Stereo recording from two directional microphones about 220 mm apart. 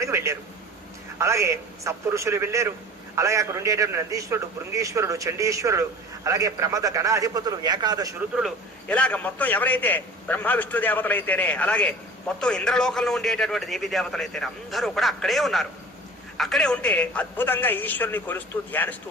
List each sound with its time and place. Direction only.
0.0 s a sound: 10° right (ahead or behind)
1.2 s a man's voice: 15° right (ahead or behind)
8.4 s a man's voice: centre (ahead or behind)